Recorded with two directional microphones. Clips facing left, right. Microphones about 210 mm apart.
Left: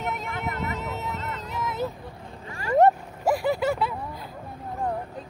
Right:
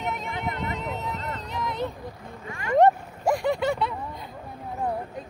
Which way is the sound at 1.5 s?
5° left (ahead or behind).